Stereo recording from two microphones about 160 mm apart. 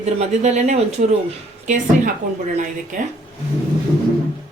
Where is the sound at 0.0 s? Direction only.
45° right (ahead or behind).